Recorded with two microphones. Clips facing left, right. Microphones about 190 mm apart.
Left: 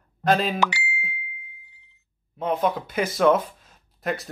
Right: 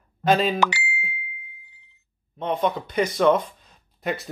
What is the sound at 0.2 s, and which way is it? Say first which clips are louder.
Speech: right 2 dB; centre (ahead or behind).